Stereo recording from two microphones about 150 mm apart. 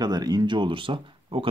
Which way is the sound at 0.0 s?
25° right (ahead or behind).